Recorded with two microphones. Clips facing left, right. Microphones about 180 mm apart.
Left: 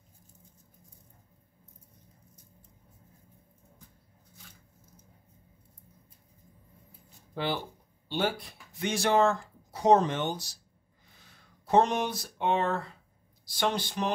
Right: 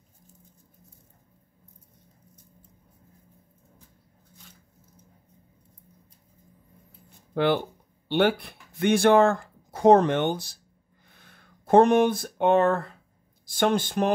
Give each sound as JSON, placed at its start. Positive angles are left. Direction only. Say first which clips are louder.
{"t": 7.3, "sound": "speech", "louder": "right 9 dB", "side_deg": -60}